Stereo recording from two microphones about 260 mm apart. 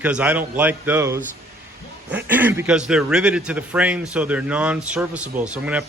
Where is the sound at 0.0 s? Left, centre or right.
Centre.